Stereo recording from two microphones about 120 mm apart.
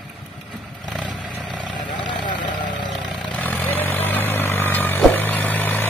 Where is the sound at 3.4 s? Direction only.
15° left (ahead or behind).